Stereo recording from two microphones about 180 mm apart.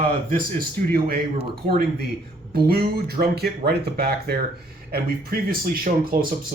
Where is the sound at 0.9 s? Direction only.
60° right (ahead or behind).